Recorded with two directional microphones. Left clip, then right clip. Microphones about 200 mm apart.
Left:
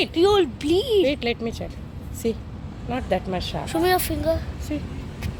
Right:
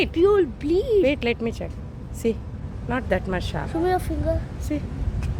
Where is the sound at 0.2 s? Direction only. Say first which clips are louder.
Even; 20° left (ahead or behind).